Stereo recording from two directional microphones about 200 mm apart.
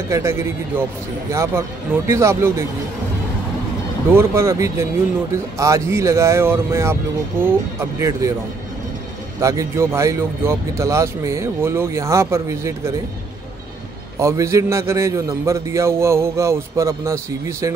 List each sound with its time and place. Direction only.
0.1 s a man's voice: 15° right (ahead or behind)
4.1 s a man's voice: 15° right (ahead or behind)
9.4 s a man's voice: 15° right (ahead or behind)
14.2 s a man's voice: 15° right (ahead or behind)